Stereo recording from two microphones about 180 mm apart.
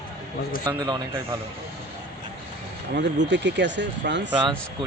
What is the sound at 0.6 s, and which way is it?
Speech, 20° right (ahead or behind).